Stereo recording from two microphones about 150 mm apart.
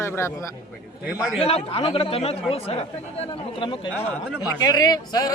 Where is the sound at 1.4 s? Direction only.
40° left (ahead or behind).